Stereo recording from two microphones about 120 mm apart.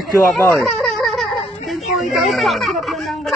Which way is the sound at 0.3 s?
Centre (ahead or behind).